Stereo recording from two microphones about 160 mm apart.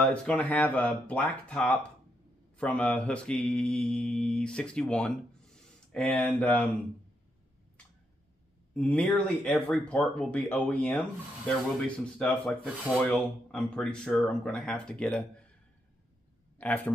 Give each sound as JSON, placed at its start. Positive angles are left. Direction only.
{"t": 0.0, "sound": "mantra", "side_deg": 5}
{"t": 8.7, "sound": "mantra", "side_deg": 10}
{"t": 12.2, "sound": "speech", "side_deg": 5}
{"t": 16.5, "sound": "speech", "side_deg": 10}